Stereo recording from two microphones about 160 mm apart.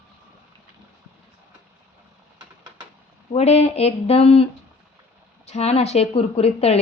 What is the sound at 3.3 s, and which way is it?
A woman's voice, 40° left (ahead or behind).